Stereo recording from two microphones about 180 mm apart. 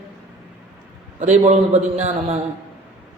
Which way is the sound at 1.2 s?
40° right (ahead or behind).